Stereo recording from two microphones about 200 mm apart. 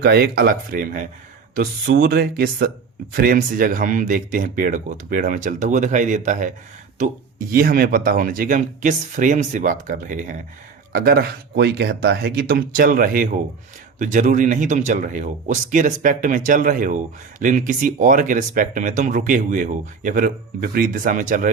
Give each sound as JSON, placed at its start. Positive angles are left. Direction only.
{"t": 0.0, "sound": "speech", "side_deg": -50}